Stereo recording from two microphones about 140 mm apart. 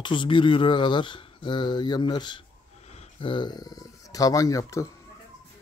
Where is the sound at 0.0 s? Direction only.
35° left (ahead or behind).